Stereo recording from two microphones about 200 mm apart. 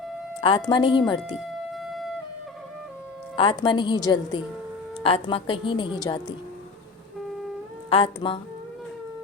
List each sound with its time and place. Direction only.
0.7 s a woman's voice: 25° left (ahead or behind)
1.4 s siren: centre (ahead or behind)
3.3 s a woman's voice: 25° left (ahead or behind)
7.9 s a woman's voice: 25° left (ahead or behind)